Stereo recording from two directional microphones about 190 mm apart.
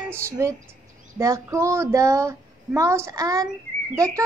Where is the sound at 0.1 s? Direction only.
15° right (ahead or behind).